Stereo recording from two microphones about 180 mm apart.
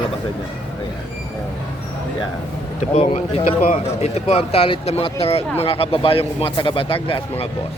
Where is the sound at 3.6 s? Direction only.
35° left (ahead or behind).